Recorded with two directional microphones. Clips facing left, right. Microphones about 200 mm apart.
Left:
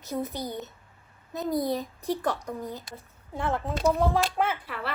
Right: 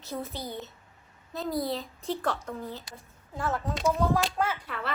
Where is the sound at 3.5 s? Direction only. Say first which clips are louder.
Left 3 dB; centre (ahead or behind).